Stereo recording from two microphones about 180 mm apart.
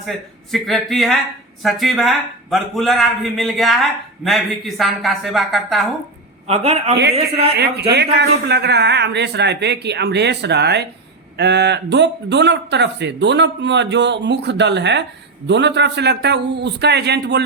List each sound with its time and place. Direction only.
0.5 s a man's voice: centre (ahead or behind)
6.5 s a man's voice: 35° right (ahead or behind)
7.5 s speech: 65° right (ahead or behind)